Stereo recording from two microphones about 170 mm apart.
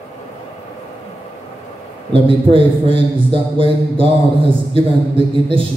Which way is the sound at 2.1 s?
30° right (ahead or behind).